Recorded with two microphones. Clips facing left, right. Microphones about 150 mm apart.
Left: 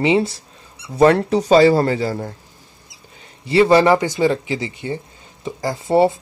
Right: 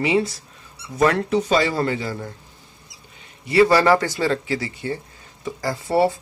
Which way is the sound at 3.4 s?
25° left (ahead or behind).